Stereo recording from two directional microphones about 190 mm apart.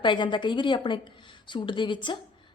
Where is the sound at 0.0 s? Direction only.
25° left (ahead or behind).